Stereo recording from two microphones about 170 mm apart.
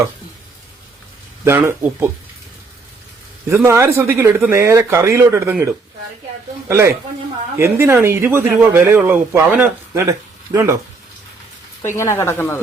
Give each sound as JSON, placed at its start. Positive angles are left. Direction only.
{"t": 1.5, "sound": "speech", "side_deg": -15}
{"t": 3.5, "sound": "speech", "side_deg": -15}
{"t": 6.7, "sound": "speech", "side_deg": -15}
{"t": 11.8, "sound": "speech", "side_deg": 15}